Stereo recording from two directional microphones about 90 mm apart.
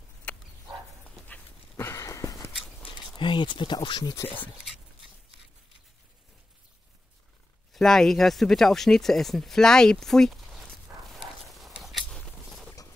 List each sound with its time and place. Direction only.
0.3 s dog: 15° left (ahead or behind)
1.9 s a sound: 35° left (ahead or behind)
3.2 s speech: 65° left (ahead or behind)
7.7 s speech: 5° left (ahead or behind)
11.1 s horse: centre (ahead or behind)
12.4 s a sound: centre (ahead or behind)